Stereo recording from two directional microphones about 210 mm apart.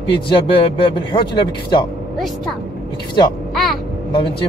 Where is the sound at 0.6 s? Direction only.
20° left (ahead or behind).